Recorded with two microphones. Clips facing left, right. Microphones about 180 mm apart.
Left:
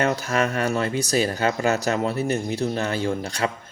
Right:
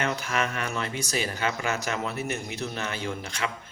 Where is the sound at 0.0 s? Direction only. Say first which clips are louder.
Left 6 dB; 40° left (ahead or behind).